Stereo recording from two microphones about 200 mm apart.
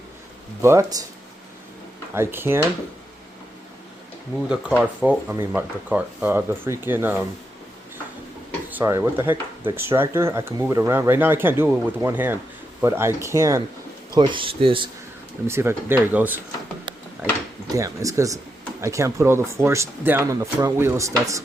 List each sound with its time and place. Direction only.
0.6 s speech: 15° right (ahead or behind)
2.1 s speech: 10° right (ahead or behind)
4.4 s speech: 5° right (ahead or behind)
8.7 s speech: 15° right (ahead or behind)
15.4 s speech: 10° right (ahead or behind)
17.7 s speech: 15° right (ahead or behind)